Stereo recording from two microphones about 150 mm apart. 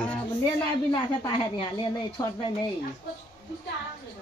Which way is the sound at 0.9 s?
30° left (ahead or behind).